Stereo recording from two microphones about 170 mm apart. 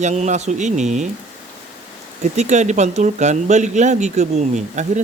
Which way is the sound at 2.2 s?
45° right (ahead or behind).